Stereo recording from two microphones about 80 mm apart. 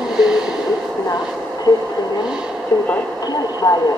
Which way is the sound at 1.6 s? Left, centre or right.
Left.